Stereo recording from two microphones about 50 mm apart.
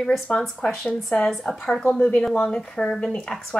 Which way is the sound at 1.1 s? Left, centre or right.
Centre.